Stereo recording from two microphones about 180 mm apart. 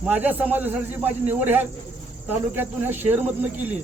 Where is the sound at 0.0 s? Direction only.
10° right (ahead or behind).